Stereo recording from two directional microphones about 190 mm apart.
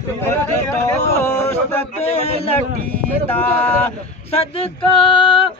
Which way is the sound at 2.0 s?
35° left (ahead or behind).